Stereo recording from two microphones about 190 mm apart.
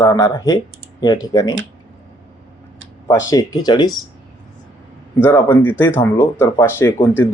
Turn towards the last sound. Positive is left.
turn(degrees=10)  # may be behind; listen again after turning